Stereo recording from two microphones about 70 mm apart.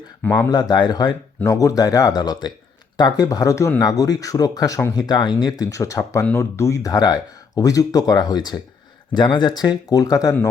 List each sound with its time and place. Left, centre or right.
0.2 s speech: left
0.5 s speech: left
1.5 s speech: left
3.0 s speech: left
3.8 s speech: left
4.9 s speech: left
5.6 s speech: left
6.9 s speech: left